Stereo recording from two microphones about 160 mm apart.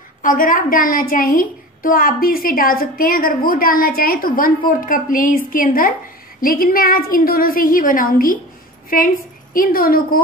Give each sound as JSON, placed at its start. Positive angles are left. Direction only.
{"t": 0.2, "sound": "a woman's voice", "side_deg": 60}